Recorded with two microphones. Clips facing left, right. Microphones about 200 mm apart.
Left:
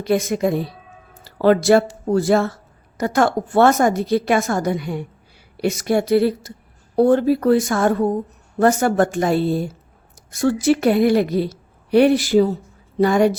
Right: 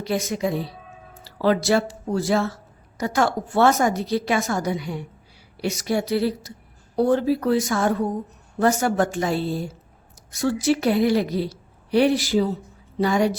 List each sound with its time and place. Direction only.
0.0 s a woman's voice: 55° left (ahead or behind)